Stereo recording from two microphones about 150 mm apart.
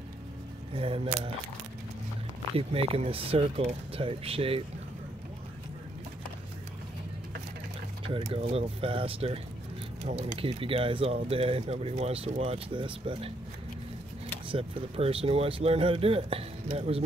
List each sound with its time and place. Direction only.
0.7 s speech: 40° right (ahead or behind)
2.5 s speech: 40° right (ahead or behind)
8.1 s speech: 40° right (ahead or behind)
14.5 s speech: 40° right (ahead or behind)